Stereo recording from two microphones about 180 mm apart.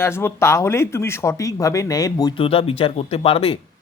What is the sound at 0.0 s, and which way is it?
Speech, 15° left (ahead or behind).